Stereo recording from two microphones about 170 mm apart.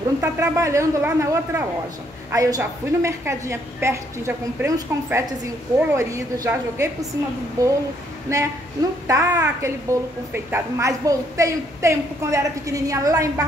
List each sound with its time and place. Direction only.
0.2 s a woman's voice: 15° right (ahead or behind)